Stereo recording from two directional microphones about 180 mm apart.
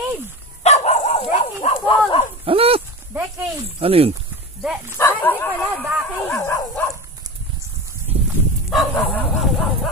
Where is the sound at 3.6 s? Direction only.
30° right (ahead or behind).